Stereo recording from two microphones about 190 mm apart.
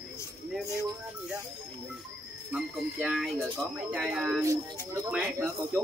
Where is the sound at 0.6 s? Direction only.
15° right (ahead or behind).